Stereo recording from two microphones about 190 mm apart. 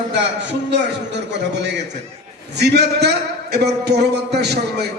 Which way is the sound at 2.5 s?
60° right (ahead or behind).